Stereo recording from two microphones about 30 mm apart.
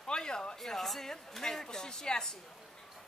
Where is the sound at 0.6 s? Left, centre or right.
Centre.